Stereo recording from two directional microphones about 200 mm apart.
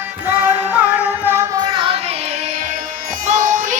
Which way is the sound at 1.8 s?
25° right (ahead or behind).